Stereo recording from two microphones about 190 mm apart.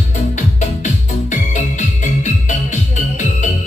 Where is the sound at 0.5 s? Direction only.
40° left (ahead or behind).